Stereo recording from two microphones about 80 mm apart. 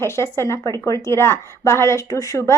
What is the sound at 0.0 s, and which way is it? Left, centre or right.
Speech, left.